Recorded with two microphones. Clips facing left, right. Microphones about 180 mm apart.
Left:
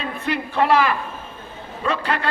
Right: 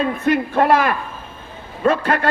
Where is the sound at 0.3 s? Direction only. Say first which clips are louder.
Right 3 dB; 50° right (ahead or behind).